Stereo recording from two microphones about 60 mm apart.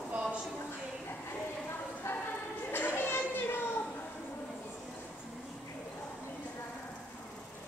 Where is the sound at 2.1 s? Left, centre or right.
Left.